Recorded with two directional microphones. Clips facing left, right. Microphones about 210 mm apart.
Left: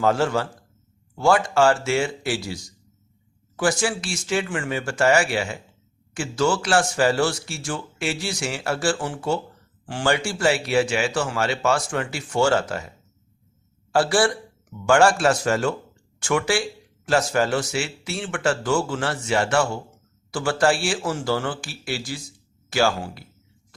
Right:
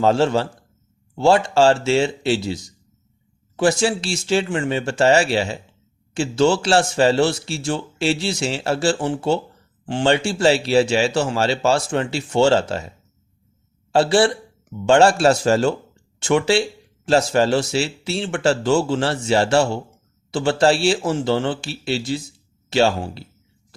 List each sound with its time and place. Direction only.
0.0 s a man's voice: 25° right (ahead or behind)
13.9 s a man's voice: 25° right (ahead or behind)